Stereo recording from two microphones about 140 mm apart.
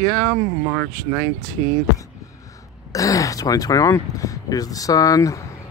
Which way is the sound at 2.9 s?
25° left (ahead or behind).